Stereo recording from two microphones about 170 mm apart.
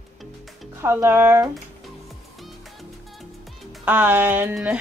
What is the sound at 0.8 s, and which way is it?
Speech, 15° right (ahead or behind).